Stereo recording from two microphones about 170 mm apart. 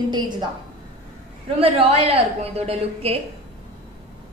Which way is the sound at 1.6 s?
35° right (ahead or behind).